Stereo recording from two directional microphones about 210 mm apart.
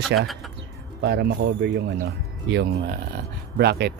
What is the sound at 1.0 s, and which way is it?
Speech, 55° right (ahead or behind).